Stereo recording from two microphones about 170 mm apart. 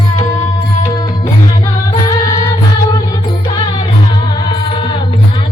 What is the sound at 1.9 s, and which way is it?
Music, 25° left (ahead or behind).